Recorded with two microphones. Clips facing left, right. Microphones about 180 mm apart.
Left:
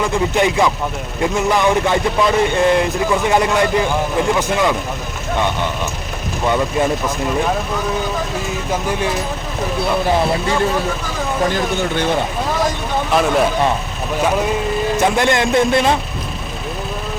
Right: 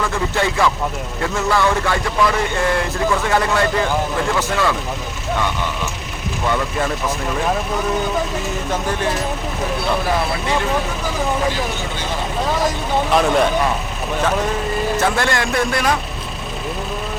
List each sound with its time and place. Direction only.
0.0 s speech: 20° left (ahead or behind)
6.5 s speech: 20° left (ahead or behind)
13.1 s speech: centre (ahead or behind)
14.9 s speech: 20° left (ahead or behind)